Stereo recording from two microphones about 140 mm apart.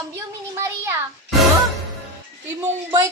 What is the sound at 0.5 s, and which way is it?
Speech, 15° right (ahead or behind).